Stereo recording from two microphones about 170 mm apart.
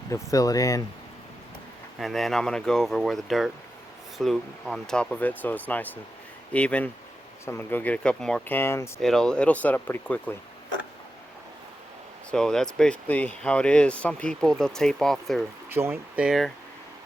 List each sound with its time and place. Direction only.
0.1 s speech: 20° left (ahead or behind)
2.0 s speech: centre (ahead or behind)
9.0 s speech: centre (ahead or behind)
12.3 s speech: 5° left (ahead or behind)
15.7 s speech: 15° right (ahead or behind)